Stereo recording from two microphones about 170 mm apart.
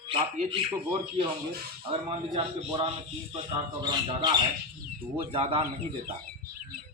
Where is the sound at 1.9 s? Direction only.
30° right (ahead or behind).